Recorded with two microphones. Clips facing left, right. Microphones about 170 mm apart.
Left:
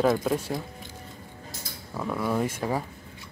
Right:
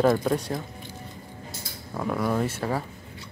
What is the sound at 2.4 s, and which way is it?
Speech, 15° left (ahead or behind).